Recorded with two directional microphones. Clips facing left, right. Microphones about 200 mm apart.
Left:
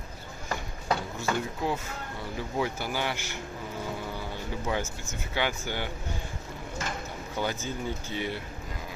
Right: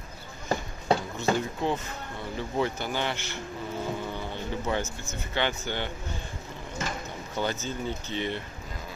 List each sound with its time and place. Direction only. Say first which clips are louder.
0.5 s a sound: right 5 dB; 25° right (ahead or behind)
1.6 s speech: right 2 dB; 5° left (ahead or behind)
4.1 s vehicle: right 2 dB; 10° left (ahead or behind)
5.3 s speech: right 1 dB; 10° left (ahead or behind)
7.3 s speech: right 1 dB; 10° left (ahead or behind)